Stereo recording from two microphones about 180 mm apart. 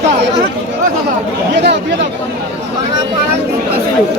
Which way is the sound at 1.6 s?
75° right (ahead or behind).